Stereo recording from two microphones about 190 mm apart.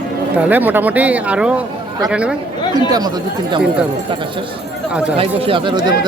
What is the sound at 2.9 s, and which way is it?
Speech, 20° right (ahead or behind).